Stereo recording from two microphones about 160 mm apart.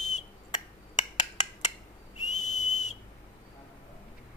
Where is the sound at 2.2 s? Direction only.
50° left (ahead or behind).